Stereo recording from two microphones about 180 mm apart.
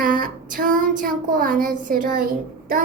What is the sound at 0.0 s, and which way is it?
Child singing, 50° right (ahead or behind).